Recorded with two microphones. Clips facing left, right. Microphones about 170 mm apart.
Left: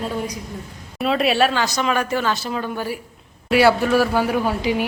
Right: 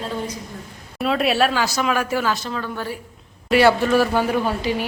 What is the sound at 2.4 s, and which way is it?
Speech, 15° left (ahead or behind).